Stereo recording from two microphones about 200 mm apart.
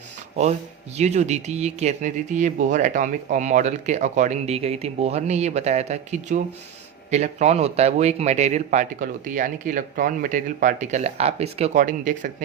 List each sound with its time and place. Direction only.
0.9 s speech: 35° right (ahead or behind)